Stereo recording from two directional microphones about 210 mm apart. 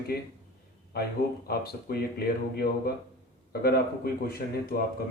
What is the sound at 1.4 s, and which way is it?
Speech, 45° left (ahead or behind).